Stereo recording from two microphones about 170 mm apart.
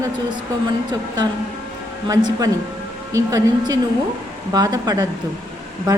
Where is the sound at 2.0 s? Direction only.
20° right (ahead or behind).